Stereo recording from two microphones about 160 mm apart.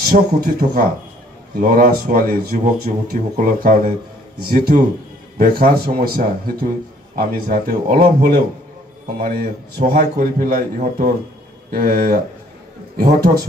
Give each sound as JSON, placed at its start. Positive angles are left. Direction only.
{"t": 0.0, "sound": "a man's voice", "side_deg": -70}